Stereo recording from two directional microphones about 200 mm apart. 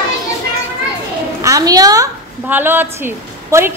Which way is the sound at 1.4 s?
15° right (ahead or behind).